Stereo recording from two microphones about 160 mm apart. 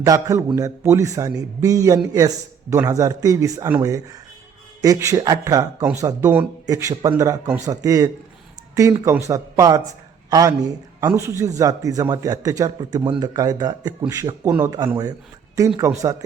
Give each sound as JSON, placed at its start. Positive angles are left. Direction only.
{"t": 0.0, "sound": "speech", "side_deg": -20}
{"t": 15.6, "sound": "speech", "side_deg": -20}